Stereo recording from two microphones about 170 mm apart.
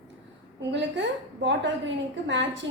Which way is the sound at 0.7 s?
90° right.